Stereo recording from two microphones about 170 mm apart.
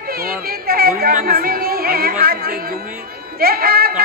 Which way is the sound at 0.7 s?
60° right (ahead or behind).